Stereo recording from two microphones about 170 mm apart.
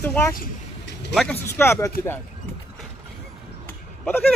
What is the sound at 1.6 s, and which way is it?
Speech, 15° left (ahead or behind).